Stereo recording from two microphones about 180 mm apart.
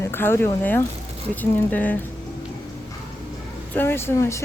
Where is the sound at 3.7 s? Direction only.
15° left (ahead or behind).